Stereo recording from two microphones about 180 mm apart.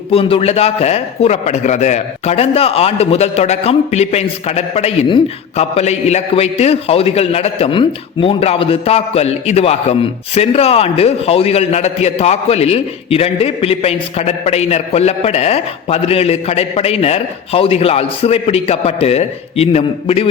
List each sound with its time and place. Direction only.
0.1 s a man's voice: 30° left (ahead or behind)